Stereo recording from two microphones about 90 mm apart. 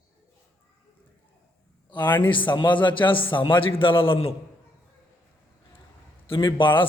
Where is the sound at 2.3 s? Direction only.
60° left (ahead or behind); by 4.2 s 85° left.